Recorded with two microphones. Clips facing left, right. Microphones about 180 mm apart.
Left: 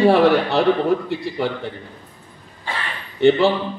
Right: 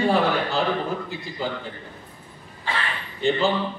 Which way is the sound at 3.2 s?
70° left (ahead or behind).